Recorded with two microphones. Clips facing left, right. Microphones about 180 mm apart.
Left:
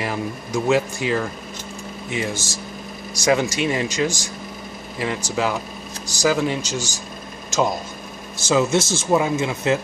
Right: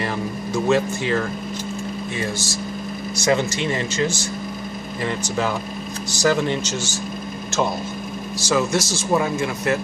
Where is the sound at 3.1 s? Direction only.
10° left (ahead or behind).